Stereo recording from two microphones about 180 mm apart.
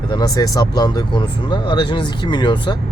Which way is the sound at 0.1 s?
20° left (ahead or behind).